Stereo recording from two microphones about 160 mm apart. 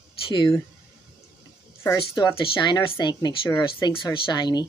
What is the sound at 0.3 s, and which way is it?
Speech, 30° left (ahead or behind).